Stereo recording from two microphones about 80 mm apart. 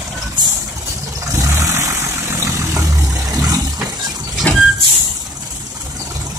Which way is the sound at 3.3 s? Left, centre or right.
Right.